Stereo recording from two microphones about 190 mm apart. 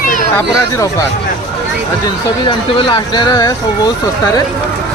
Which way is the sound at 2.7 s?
25° left (ahead or behind).